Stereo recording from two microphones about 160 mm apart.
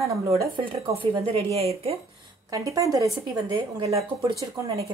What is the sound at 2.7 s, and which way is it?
Speech, 20° right (ahead or behind).